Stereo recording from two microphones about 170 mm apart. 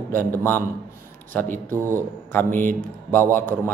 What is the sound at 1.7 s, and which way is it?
Speech, 15° right (ahead or behind).